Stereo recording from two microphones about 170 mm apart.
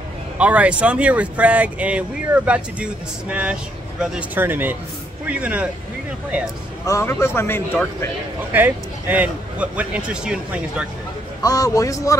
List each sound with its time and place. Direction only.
0.4 s speech: 10° right (ahead or behind)
6.9 s speech: 15° left (ahead or behind)
8.5 s speech: 10° right (ahead or behind)
11.4 s a man's voice: 20° left (ahead or behind)